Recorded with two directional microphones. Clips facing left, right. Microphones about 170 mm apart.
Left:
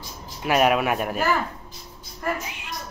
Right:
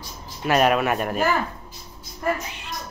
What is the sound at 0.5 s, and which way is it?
Speech, 10° left (ahead or behind).